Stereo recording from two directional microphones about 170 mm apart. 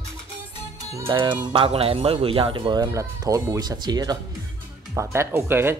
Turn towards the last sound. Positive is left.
turn(degrees=-15)  # may be behind; listen again after turning